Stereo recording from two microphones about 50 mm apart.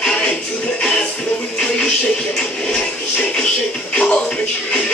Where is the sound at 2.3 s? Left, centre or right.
Centre.